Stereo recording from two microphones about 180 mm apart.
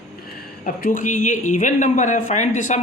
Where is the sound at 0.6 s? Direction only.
50° left (ahead or behind).